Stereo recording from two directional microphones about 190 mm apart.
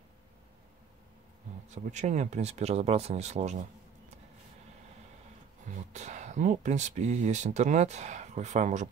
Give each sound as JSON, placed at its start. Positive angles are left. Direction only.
{"t": 1.7, "sound": "speech", "side_deg": -40}
{"t": 5.9, "sound": "speech", "side_deg": -40}